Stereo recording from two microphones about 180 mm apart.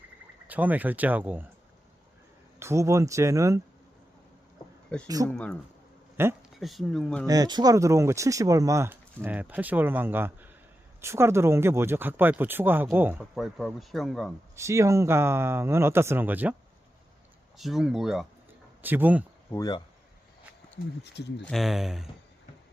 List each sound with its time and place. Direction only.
0.4 s speech: 10° right (ahead or behind)
2.6 s speech: 15° right (ahead or behind)
5.0 s speech: 20° right (ahead or behind)
5.3 s speech: 5° left (ahead or behind)
6.2 s speech: 15° right (ahead or behind)
6.6 s speech: centre (ahead or behind)
7.3 s speech: 20° right (ahead or behind); by 14.3 s centre (ahead or behind)
14.5 s speech: 15° right (ahead or behind)
17.6 s speech: centre (ahead or behind)
19.5 s speech: 20° left (ahead or behind)
21.0 s speech: 70° left (ahead or behind)
21.4 s speech: centre (ahead or behind)